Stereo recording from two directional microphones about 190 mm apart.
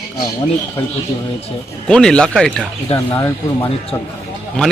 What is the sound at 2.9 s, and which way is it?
Speech, 20° left (ahead or behind).